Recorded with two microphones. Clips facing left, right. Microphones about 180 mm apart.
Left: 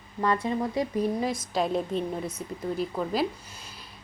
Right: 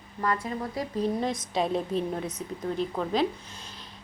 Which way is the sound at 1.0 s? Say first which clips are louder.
Left 1 dB; 5° left (ahead or behind).